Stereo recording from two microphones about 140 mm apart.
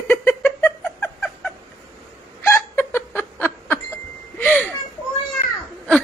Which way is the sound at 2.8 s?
15° left (ahead or behind).